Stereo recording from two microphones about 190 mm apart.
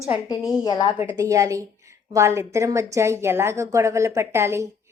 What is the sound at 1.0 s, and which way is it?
Speech, 15° right (ahead or behind).